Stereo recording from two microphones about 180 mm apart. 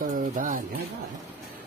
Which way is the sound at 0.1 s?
45° right (ahead or behind).